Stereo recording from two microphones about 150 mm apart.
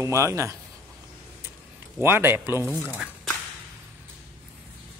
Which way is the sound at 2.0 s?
15° right (ahead or behind).